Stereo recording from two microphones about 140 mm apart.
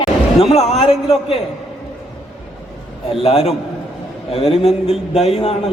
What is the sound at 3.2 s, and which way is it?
A man's voice, 45° left (ahead or behind).